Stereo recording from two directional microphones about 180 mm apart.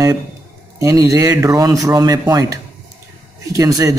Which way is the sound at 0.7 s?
15° right (ahead or behind).